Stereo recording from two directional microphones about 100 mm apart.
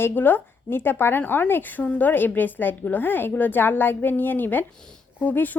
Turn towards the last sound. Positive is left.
turn(degrees=15)  # may be behind; listen again after turning